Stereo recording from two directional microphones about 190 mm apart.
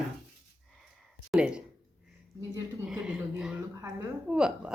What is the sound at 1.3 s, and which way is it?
Speech, 5° right (ahead or behind).